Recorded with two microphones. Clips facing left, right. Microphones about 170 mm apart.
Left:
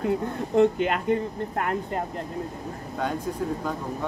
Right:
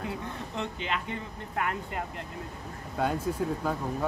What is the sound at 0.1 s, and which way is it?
Speech, 50° left (ahead or behind).